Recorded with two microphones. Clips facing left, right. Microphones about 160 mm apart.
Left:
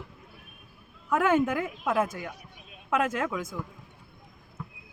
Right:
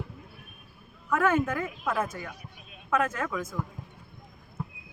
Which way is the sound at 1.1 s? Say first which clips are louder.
Left 1 dB; 20° left (ahead or behind).